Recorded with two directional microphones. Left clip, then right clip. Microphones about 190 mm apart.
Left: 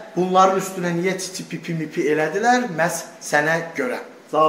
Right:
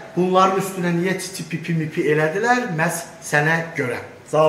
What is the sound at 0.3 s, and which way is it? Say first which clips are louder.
A man's voice: left 1 dB; 50° left (ahead or behind).